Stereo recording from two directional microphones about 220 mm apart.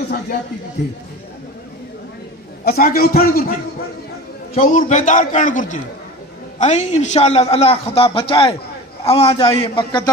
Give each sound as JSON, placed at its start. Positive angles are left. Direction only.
{"t": 0.8, "sound": "a man's voice", "side_deg": 45}
{"t": 2.6, "sound": "a man's voice", "side_deg": 45}
{"t": 4.6, "sound": "a man's voice", "side_deg": 35}